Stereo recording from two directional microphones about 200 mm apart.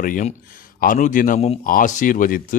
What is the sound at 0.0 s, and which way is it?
A man's voice, 40° left (ahead or behind).